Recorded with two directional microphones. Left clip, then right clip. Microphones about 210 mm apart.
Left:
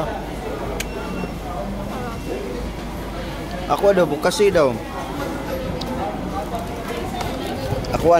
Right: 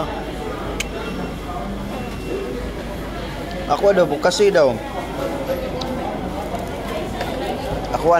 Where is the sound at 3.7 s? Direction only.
25° left (ahead or behind).